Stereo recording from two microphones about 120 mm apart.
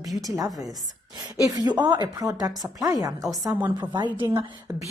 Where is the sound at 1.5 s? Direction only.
35° right (ahead or behind).